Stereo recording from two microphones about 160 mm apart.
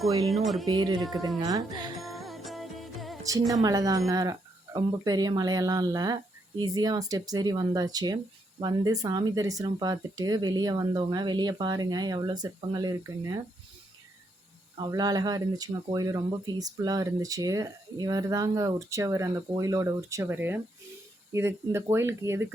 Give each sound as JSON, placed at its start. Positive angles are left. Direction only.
{"t": 0.3, "sound": "speech", "side_deg": 0}
{"t": 0.7, "sound": "speech", "side_deg": -25}
{"t": 2.0, "sound": "music", "side_deg": 0}
{"t": 3.5, "sound": "speech", "side_deg": -20}
{"t": 14.8, "sound": "speech", "side_deg": -25}